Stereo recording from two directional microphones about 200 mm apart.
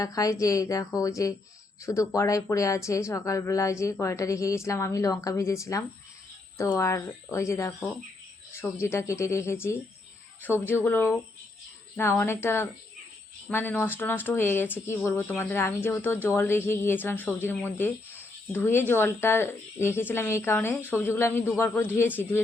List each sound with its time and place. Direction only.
0.0 s speech: 15° left (ahead or behind)